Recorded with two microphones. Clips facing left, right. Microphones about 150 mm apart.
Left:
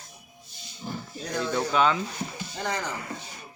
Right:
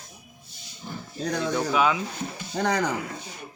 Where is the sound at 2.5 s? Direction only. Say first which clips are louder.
Right 7 dB; 70° right (ahead or behind).